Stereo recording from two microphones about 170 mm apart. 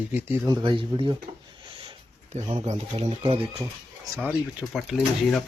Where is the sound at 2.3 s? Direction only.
35° right (ahead or behind).